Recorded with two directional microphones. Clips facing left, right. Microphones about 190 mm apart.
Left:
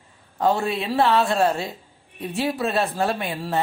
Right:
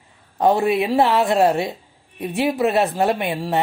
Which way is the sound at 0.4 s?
20° right (ahead or behind).